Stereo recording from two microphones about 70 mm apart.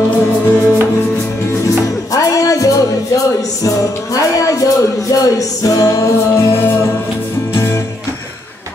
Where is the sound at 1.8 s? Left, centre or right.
Left.